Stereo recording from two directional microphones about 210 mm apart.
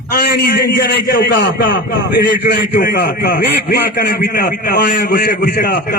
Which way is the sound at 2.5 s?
45° left (ahead or behind).